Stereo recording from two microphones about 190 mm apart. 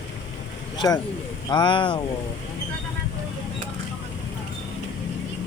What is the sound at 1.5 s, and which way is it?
Speech, 25° left (ahead or behind).